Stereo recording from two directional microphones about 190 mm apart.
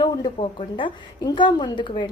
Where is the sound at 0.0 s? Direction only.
25° left (ahead or behind).